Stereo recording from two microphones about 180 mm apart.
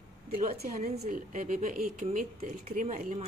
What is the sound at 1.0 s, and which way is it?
Speech, 45° right (ahead or behind).